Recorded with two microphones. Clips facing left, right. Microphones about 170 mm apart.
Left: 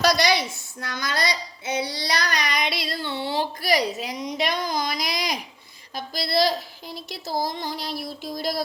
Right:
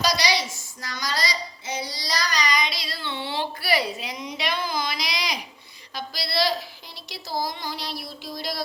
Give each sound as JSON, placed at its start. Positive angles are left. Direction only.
{"t": 0.0, "sound": "a woman's voice", "side_deg": 55}